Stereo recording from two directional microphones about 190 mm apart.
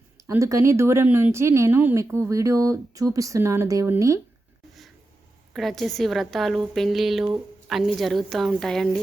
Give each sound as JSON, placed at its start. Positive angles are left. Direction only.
{"t": 0.3, "sound": "speech", "side_deg": -15}
{"t": 5.5, "sound": "a woman's voice", "side_deg": 0}